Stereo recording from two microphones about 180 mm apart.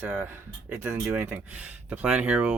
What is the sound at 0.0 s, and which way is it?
Speech, 10° right (ahead or behind).